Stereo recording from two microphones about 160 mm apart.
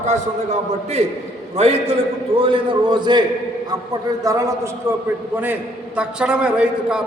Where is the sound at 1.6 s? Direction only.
40° right (ahead or behind).